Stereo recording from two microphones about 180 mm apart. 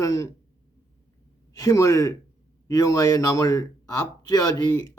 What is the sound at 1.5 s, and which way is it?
Speech, 20° left (ahead or behind).